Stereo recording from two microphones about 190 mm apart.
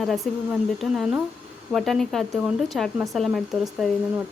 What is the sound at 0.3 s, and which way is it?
Speech, centre (ahead or behind).